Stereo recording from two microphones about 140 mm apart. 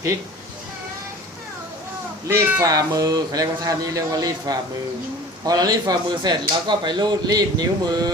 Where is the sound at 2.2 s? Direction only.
20° right (ahead or behind).